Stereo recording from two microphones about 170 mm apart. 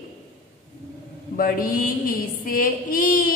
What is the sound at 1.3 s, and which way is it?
Mantra, 55° left (ahead or behind).